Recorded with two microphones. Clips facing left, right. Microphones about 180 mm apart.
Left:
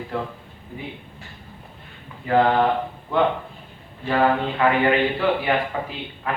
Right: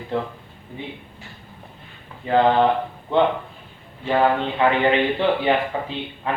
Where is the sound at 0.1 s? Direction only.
25° right (ahead or behind).